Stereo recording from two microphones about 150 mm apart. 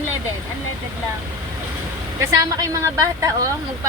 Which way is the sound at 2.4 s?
25° right (ahead or behind).